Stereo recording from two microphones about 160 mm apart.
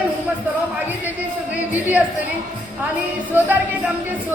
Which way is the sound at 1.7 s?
10° right (ahead or behind).